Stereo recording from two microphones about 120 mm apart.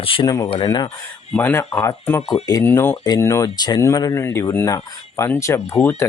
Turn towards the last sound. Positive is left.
turn(degrees=20)  # may be behind; listen again after turning